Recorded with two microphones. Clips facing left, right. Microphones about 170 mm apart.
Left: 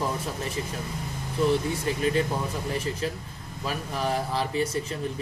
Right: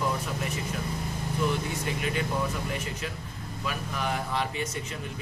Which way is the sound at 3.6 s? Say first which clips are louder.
Left 3 dB; 35° left (ahead or behind).